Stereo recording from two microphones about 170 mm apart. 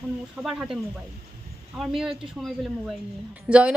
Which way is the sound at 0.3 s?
5° right (ahead or behind).